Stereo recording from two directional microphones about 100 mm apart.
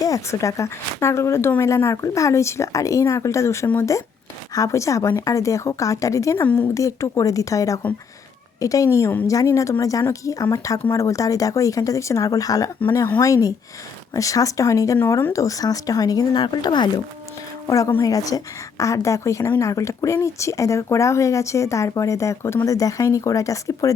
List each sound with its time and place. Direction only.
0.0 s speech: 35° left (ahead or behind)
6.4 s speech: 20° left (ahead or behind)
6.7 s speech: 30° left (ahead or behind)
14.9 s speech: 20° left (ahead or behind); by 16.9 s 45° left (ahead or behind)
17.7 s speech: 35° left (ahead or behind)